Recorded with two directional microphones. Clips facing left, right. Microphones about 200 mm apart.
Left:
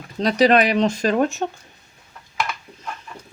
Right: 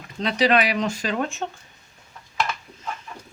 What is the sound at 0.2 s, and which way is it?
Speech, 40° left (ahead or behind).